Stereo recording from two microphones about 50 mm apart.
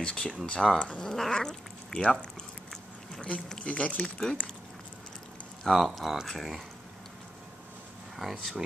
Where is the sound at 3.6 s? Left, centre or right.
Left.